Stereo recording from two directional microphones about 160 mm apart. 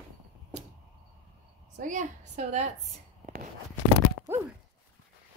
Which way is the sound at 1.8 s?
50° right (ahead or behind).